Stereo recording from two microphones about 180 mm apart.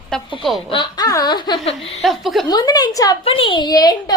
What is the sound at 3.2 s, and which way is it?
Speech, 30° left (ahead or behind).